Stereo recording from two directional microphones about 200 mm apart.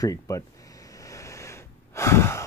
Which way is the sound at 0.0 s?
15° left (ahead or behind).